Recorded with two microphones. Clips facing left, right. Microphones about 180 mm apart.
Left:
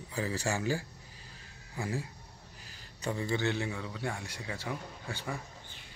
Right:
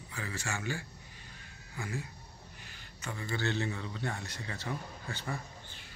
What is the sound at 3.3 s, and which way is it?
Speech, 10° left (ahead or behind).